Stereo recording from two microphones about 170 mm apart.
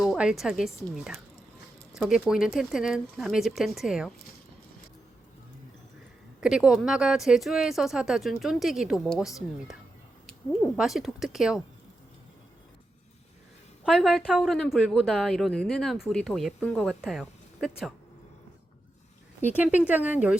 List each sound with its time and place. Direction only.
0.0 s a woman's voice: centre (ahead or behind)
6.4 s speech: 5° right (ahead or behind)
10.8 s speech: centre (ahead or behind)
13.8 s speech: centre (ahead or behind)
19.4 s speech: 10° right (ahead or behind)